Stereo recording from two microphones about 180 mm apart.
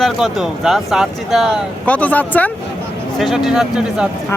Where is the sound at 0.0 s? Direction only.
Centre (ahead or behind).